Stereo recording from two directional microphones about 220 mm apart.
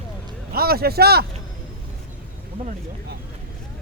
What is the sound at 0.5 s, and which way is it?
Speech, 45° right (ahead or behind).